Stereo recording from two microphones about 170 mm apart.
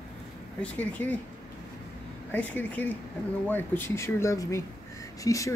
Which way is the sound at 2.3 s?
10° left (ahead or behind).